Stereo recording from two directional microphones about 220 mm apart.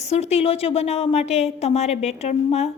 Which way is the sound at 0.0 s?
30° left (ahead or behind).